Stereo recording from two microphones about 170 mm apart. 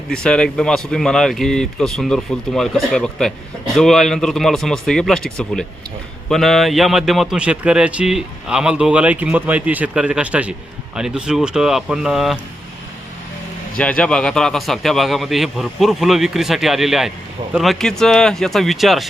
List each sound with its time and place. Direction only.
0.1 s speech: 5° left (ahead or behind)
13.7 s speech: 5° left (ahead or behind)